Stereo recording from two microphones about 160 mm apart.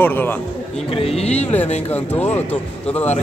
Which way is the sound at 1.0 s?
40° left (ahead or behind).